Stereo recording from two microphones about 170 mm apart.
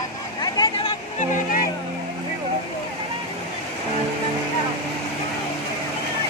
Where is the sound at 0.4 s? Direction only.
25° left (ahead or behind).